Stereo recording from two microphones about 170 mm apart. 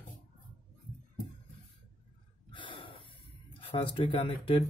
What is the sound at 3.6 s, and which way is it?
Speech, 30° left (ahead or behind).